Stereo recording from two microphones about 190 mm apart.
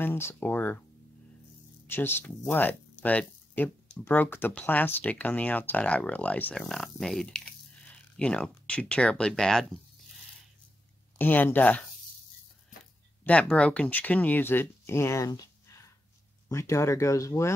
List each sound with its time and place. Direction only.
0.0 s speech: 10° left (ahead or behind)
1.9 s speech: 10° left (ahead or behind)
11.1 s speech: 10° left (ahead or behind)
13.2 s speech: 5° left (ahead or behind)